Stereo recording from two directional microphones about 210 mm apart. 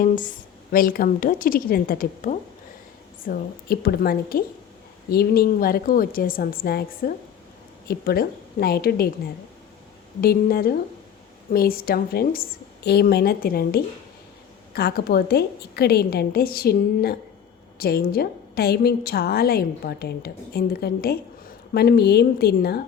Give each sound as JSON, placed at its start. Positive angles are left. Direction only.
{"t": 0.0, "sound": "a woman's voice", "side_deg": 40}
{"t": 10.2, "sound": "a woman's voice", "side_deg": 45}